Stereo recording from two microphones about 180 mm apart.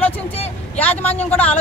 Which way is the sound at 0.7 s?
10° left (ahead or behind).